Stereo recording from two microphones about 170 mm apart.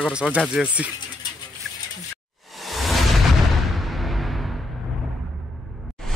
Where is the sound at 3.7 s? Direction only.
Centre (ahead or behind).